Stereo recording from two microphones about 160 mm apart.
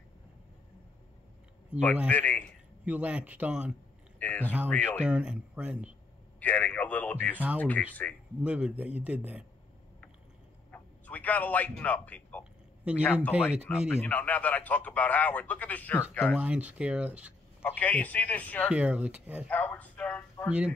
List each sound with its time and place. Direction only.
2.0 s a man's voice: 10° left (ahead or behind)
2.8 s speech: 10° right (ahead or behind)
4.2 s a man's voice: 10° left (ahead or behind)
5.0 s speech: 5° right (ahead or behind)
6.4 s a man's voice: 10° left (ahead or behind)
8.4 s speech: 5° right (ahead or behind)
10.7 s a man's voice: 10° left (ahead or behind)
12.9 s speech: 10° right (ahead or behind)
13.9 s a man's voice: 10° left (ahead or behind)
16.3 s speech: 10° right (ahead or behind)
17.6 s a man's voice: 10° left (ahead or behind)
18.7 s speech: 5° right (ahead or behind)
19.5 s a man's voice: 10° left (ahead or behind)
20.4 s speech: 5° right (ahead or behind)